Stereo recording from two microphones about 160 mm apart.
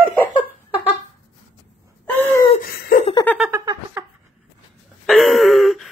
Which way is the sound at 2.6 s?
60° left (ahead or behind).